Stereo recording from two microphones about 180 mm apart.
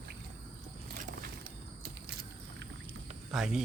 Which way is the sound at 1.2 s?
55° right (ahead or behind).